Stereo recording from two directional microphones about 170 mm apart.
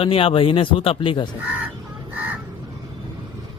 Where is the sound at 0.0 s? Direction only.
35° left (ahead or behind).